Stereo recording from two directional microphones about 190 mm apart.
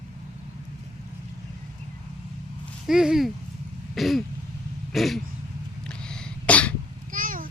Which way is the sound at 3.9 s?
Centre (ahead or behind).